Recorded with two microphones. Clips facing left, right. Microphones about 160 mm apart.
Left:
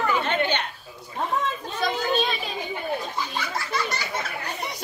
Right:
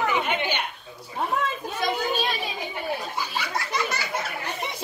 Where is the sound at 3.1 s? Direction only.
10° right (ahead or behind).